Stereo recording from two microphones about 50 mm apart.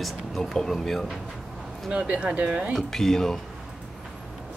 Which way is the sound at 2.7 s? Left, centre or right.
Centre.